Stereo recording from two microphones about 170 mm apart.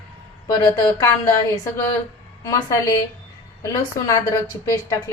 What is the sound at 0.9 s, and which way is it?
A woman's voice, 20° left (ahead or behind).